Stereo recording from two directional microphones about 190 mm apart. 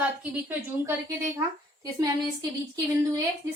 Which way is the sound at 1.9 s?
20° right (ahead or behind).